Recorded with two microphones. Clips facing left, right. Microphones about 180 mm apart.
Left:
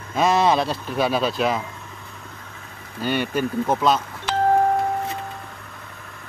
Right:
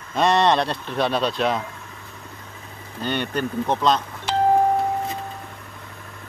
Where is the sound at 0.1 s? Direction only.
Centre (ahead or behind).